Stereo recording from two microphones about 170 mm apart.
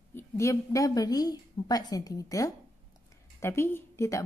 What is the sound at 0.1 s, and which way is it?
A woman's voice, 15° left (ahead or behind).